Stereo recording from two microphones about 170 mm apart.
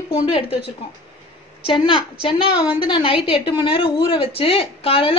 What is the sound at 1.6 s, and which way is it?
A woman's voice, 30° left (ahead or behind).